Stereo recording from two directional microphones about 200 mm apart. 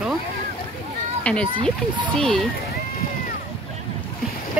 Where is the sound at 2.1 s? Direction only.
Centre (ahead or behind).